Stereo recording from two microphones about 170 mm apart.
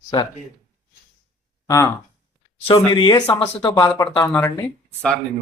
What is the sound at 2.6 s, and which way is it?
Speech, 30° left (ahead or behind).